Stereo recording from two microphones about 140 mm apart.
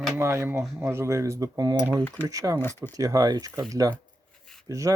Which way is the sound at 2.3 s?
25° right (ahead or behind).